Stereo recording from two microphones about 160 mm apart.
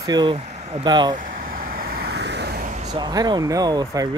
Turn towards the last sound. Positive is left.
turn(degrees=-25)  # may be behind; listen again after turning